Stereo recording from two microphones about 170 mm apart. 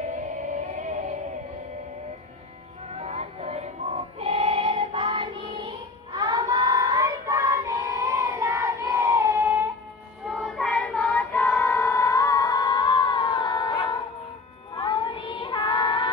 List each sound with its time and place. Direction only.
0.7 s synthetic singing: 50° right (ahead or behind)
3.0 s music: 40° right (ahead or behind)
6.1 s child singing: 25° right (ahead or behind)
10.2 s child singing: centre (ahead or behind); by 16.1 s 30° left (ahead or behind)